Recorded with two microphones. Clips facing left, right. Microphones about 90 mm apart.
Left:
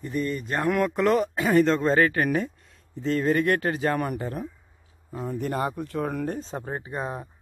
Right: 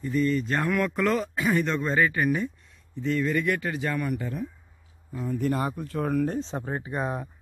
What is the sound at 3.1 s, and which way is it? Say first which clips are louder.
Speech: left 3 dB; 50° left (ahead or behind).